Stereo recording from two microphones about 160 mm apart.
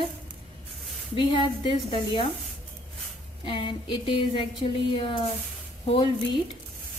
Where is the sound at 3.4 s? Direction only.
30° left (ahead or behind).